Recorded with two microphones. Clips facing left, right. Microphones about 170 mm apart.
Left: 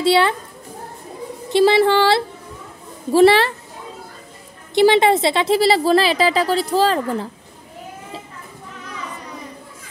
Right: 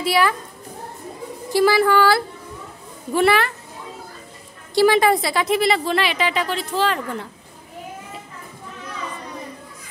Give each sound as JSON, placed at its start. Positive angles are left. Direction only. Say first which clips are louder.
{"t": 0.0, "sound": "speech", "louder": "left 4 dB", "side_deg": 25}
{"t": 1.5, "sound": "speech", "louder": "left 3 dB", "side_deg": 25}
{"t": 4.7, "sound": "a woman's voice", "louder": "left 2 dB", "side_deg": 25}